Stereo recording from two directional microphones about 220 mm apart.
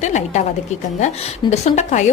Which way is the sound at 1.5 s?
30° left (ahead or behind).